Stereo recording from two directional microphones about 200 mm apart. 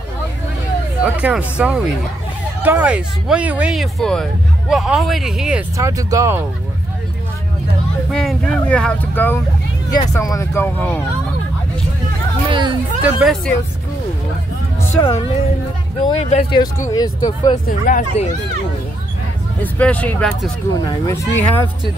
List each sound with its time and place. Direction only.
1.0 s speech: 5° right (ahead or behind)
5.8 s speech: 15° right (ahead or behind)
8.1 s speech: 5° left (ahead or behind)
12.4 s hubbub: 25° right (ahead or behind)
13.0 s speech: 5° right (ahead or behind)
15.0 s speech: 20° left (ahead or behind)
16.9 s speech: 20° left (ahead or behind)
17.6 s speech: 40° left (ahead or behind)
19.6 s speech: 5° left (ahead or behind)